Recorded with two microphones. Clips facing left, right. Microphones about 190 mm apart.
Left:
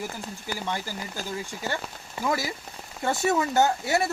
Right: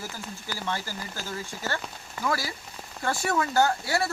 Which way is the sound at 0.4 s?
15° left (ahead or behind).